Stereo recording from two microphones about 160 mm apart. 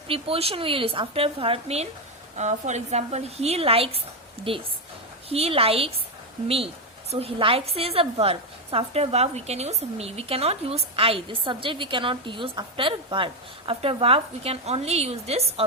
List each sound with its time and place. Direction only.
0.1 s a woman's voice: 35° right (ahead or behind)
5.3 s a woman's voice: 40° right (ahead or behind)
7.1 s a woman's voice: 40° right (ahead or behind)